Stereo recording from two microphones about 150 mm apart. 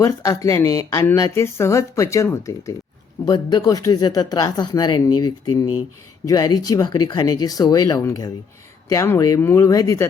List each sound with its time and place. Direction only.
0.0 s speech: 20° left (ahead or behind)